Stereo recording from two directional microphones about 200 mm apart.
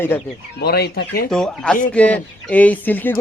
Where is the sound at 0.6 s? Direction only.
50° left (ahead or behind).